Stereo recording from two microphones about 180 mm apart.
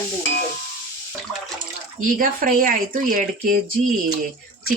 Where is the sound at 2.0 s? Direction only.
50° right (ahead or behind).